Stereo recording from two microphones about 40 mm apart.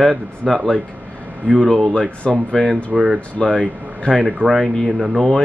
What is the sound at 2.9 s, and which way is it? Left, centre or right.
Speech, right.